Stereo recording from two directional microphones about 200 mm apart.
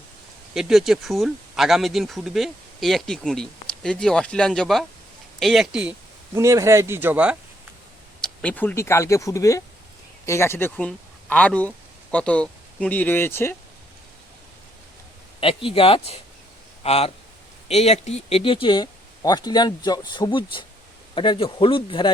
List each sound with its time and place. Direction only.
0.5 s speech: centre (ahead or behind)
6.3 s speech: 15° right (ahead or behind)
8.2 s speech: 5° left (ahead or behind)
15.4 s speech: 25° left (ahead or behind)